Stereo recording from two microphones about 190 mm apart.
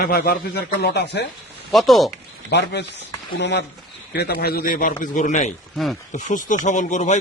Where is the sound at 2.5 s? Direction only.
60° left (ahead or behind); by 5.5 s 40° left (ahead or behind).